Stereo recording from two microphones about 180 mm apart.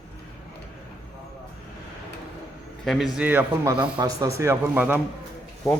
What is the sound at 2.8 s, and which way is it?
Speech, centre (ahead or behind).